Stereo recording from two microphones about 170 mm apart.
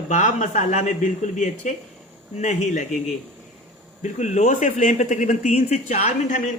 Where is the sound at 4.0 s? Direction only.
45° left (ahead or behind).